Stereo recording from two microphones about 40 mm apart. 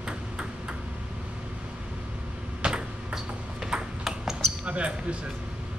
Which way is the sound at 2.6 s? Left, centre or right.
Right.